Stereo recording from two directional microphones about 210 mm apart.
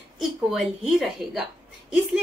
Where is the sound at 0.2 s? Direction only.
Centre (ahead or behind).